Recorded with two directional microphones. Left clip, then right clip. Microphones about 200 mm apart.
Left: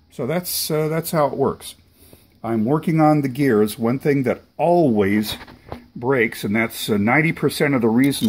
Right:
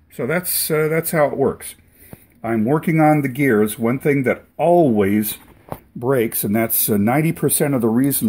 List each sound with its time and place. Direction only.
0.2 s speech: centre (ahead or behind)
0.7 s speech: 15° left (ahead or behind)
2.4 s speech: centre (ahead or behind)
6.1 s speech: 15° right (ahead or behind)